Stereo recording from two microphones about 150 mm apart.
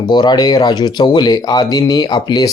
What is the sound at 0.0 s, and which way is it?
Speech, 30° left (ahead or behind).